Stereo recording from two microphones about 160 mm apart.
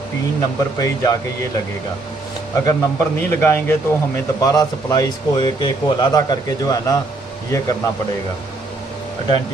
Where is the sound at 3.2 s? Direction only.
10° left (ahead or behind); by 6.2 s 30° left (ahead or behind).